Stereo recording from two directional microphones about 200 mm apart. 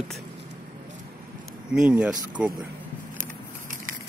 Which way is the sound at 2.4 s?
5° right (ahead or behind).